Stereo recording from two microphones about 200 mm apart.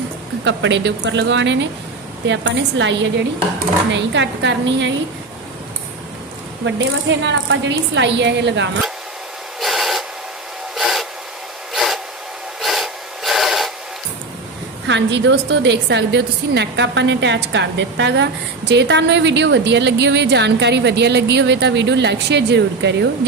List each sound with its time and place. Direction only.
0.4 s a woman's voice: 65° right (ahead or behind)
6.7 s a woman's voice: 65° right (ahead or behind)
9.6 s rub: centre (ahead or behind)
10.8 s a sound: centre (ahead or behind)
12.6 s filing: centre (ahead or behind)
14.8 s a woman's voice: 65° right (ahead or behind)